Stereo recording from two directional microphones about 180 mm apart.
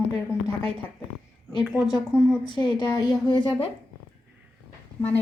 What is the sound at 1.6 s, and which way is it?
Speech, centre (ahead or behind).